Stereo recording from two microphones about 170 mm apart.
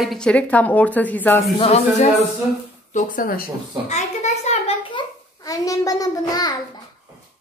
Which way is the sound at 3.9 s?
40° left (ahead or behind).